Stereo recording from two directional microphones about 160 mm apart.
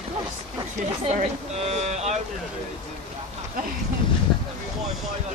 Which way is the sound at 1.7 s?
45° right (ahead or behind).